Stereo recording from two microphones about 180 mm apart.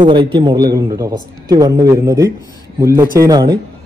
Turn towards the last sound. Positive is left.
turn(degrees=-20)  # may be behind; listen again after turning